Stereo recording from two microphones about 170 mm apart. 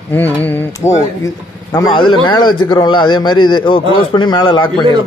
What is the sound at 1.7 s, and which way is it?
A man's voice, 25° left (ahead or behind).